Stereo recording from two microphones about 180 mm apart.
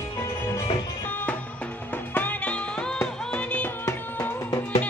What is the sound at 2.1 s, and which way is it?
Music, 10° left (ahead or behind).